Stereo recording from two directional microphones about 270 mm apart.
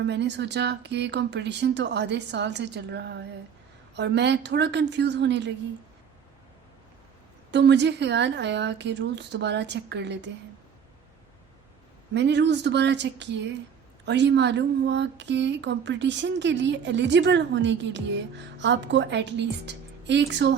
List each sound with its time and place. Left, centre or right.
0.1 s a woman's voice: right
7.5 s a woman's voice: right
12.1 s a woman's voice: right